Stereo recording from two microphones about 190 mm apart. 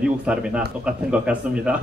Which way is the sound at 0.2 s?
5° right (ahead or behind).